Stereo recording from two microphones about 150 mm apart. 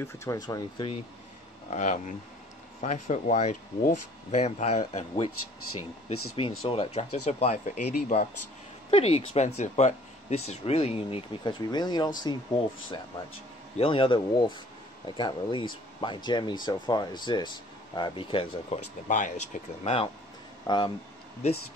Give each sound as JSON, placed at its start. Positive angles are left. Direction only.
{"t": 0.0, "sound": "speech", "side_deg": 20}
{"t": 1.7, "sound": "speech", "side_deg": 50}
{"t": 11.6, "sound": "speech", "side_deg": 30}
{"t": 19.0, "sound": "speech", "side_deg": 60}
{"t": 19.8, "sound": "speech", "side_deg": 40}
{"t": 20.6, "sound": "speech", "side_deg": 30}